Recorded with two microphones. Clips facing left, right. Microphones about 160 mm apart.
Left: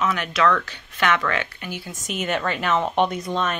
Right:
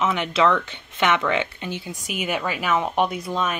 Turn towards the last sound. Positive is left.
turn(degrees=-5)  # may be behind; listen again after turning